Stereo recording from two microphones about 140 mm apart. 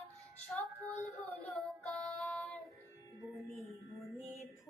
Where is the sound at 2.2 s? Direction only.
5° left (ahead or behind).